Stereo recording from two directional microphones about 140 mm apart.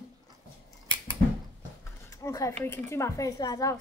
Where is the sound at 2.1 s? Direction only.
25° left (ahead or behind).